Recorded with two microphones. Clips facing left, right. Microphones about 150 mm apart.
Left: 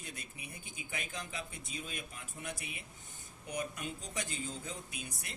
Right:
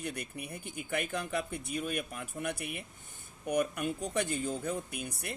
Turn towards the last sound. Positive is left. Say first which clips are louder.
# right 7 dB
turn(degrees=-60)  # may be behind; listen again after turning